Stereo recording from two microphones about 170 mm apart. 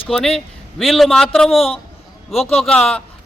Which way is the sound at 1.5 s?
35° left (ahead or behind).